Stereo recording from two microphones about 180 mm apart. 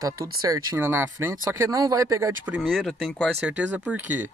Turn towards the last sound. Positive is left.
turn(degrees=-10)  # may be behind; listen again after turning